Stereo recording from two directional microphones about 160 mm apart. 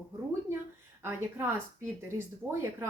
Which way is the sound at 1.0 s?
15° right (ahead or behind).